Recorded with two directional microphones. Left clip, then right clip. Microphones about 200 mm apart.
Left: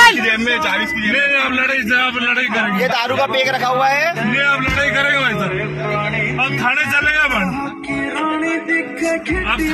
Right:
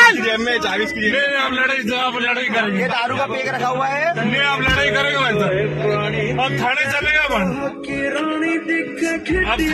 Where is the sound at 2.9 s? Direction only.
20° left (ahead or behind).